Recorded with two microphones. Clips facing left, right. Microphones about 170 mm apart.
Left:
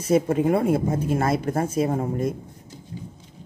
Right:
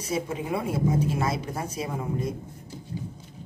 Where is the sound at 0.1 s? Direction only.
50° left (ahead or behind).